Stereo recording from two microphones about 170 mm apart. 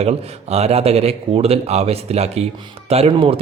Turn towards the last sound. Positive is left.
turn(degrees=-35)  # may be behind; listen again after turning